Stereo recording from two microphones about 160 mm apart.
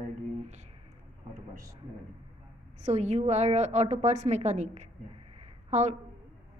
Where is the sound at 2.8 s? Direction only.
45° right (ahead or behind).